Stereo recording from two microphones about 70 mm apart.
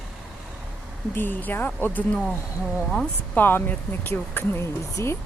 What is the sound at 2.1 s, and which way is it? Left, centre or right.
Speech, centre.